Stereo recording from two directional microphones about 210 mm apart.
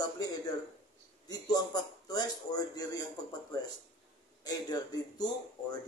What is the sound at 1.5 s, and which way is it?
Speech, 20° left (ahead or behind).